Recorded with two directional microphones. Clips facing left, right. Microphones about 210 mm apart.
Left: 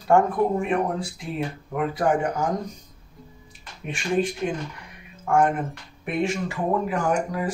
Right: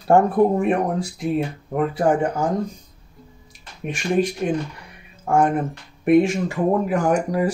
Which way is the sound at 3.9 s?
40° right (ahead or behind).